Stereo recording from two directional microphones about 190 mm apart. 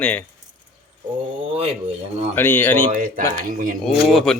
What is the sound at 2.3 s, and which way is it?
Speech, 10° left (ahead or behind).